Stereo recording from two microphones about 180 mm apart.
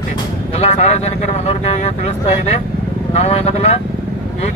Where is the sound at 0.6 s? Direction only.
35° left (ahead or behind).